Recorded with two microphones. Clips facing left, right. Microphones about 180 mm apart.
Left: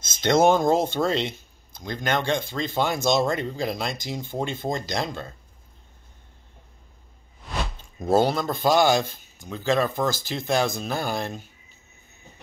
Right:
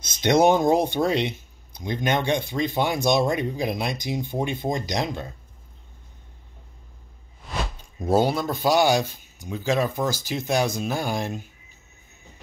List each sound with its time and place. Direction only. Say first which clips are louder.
0.0 s speech: right 1 dB; 15° right (ahead or behind)
8.0 s speech: even; 10° right (ahead or behind)